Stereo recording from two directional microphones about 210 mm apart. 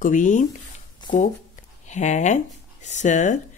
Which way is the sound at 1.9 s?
35° left (ahead or behind).